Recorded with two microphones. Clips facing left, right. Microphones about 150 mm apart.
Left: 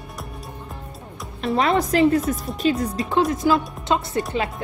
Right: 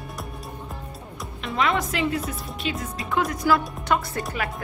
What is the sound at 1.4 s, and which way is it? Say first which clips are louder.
A woman's voice: left 5 dB; 35° left (ahead or behind).